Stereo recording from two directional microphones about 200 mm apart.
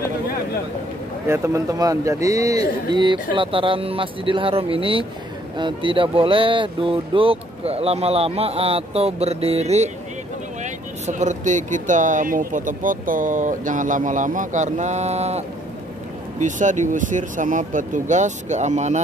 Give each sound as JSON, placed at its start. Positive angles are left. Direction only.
{"t": 1.2, "sound": "speech", "side_deg": -15}